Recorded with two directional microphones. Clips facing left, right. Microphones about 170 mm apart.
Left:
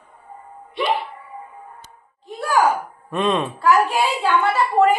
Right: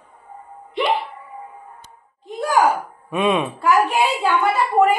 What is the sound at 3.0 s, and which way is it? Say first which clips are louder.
Speech: right 1 dB; 10° right (ahead or behind).